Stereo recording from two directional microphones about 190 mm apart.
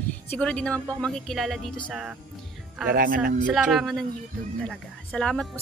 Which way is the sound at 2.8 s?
50° right (ahead or behind).